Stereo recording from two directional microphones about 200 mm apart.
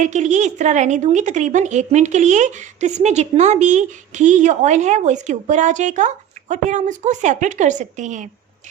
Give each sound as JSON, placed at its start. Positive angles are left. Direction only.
{"t": 0.0, "sound": "a woman's voice", "side_deg": -35}